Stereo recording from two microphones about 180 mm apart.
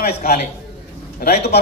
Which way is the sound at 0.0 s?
60° left (ahead or behind).